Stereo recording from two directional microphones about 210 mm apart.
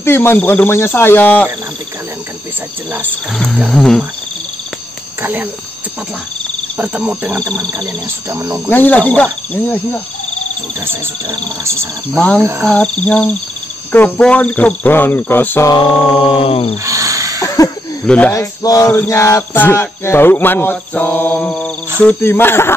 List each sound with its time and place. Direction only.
0.0 s cricket: 10° left (ahead or behind)
3.1 s wild animals: centre (ahead or behind)
5.2 s speech: 10° right (ahead or behind)
6.8 s speech: 5° right (ahead or behind)
8.6 s cricket: 10° left (ahead or behind)
11.2 s speech: 15° right (ahead or behind)
12.2 s wild animals: 5° left (ahead or behind)
13.9 s cricket: 10° left (ahead or behind); by 16.7 s 25° left (ahead or behind)
16.8 s a sound: 15° right (ahead or behind)
17.6 s a sound: 15° left (ahead or behind)
18.0 s cricket: 5° left (ahead or behind)